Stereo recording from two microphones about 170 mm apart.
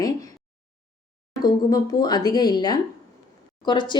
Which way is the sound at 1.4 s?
20° left (ahead or behind).